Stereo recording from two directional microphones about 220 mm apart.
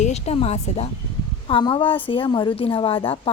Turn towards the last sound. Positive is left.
turn(degrees=25)  # may be behind; listen again after turning